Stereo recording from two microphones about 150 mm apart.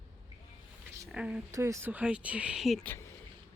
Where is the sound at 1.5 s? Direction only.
20° right (ahead or behind); by 2.8 s centre (ahead or behind).